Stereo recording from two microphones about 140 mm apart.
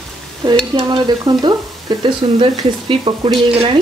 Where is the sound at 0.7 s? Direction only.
30° right (ahead or behind).